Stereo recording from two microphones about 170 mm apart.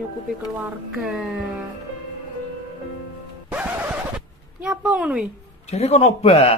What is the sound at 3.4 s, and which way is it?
Scratch, 10° right (ahead or behind).